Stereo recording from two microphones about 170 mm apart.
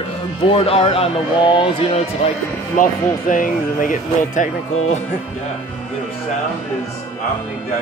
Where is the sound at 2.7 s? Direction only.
50° left (ahead or behind).